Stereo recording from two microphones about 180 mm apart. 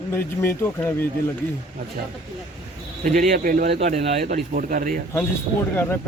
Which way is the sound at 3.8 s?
35° right (ahead or behind).